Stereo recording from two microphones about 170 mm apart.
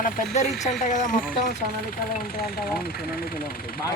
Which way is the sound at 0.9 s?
45° left (ahead or behind).